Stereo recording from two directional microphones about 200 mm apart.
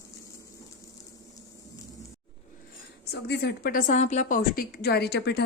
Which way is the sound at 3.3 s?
55° left (ahead or behind).